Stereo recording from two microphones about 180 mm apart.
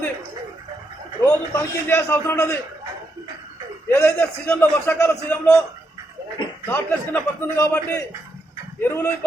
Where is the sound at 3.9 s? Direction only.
10° left (ahead or behind).